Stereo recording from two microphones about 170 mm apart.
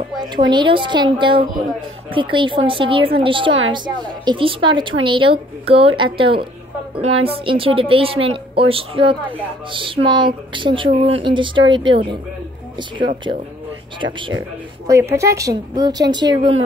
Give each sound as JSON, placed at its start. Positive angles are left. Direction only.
{"t": 0.2, "sound": "a woman's voice", "side_deg": -25}
{"t": 14.0, "sound": "a woman's voice", "side_deg": -30}
{"t": 14.9, "sound": "a woman's voice", "side_deg": -15}